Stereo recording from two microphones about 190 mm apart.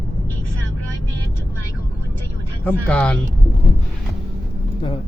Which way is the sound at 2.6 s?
5° left (ahead or behind).